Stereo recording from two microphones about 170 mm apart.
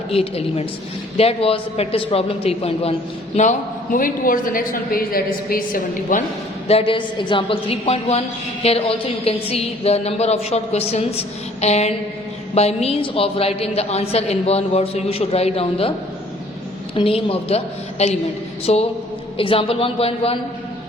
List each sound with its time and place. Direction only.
0.1 s a woman's voice: 35° left (ahead or behind)
3.9 s a woman's voice: 55° left (ahead or behind)
6.7 s a woman's voice: 35° left (ahead or behind)
16.9 s a woman's voice: 30° left (ahead or behind)